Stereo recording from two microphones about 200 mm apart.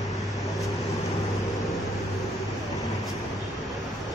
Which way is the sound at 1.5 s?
Centre (ahead or behind).